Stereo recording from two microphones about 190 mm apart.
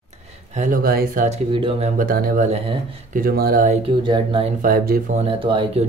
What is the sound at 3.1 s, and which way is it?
Speech, 50° right (ahead or behind).